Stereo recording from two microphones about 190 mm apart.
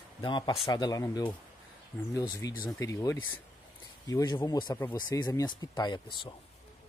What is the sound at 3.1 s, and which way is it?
Speech, 90° left.